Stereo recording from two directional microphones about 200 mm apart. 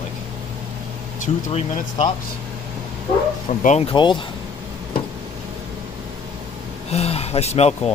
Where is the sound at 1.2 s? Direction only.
30° left (ahead or behind).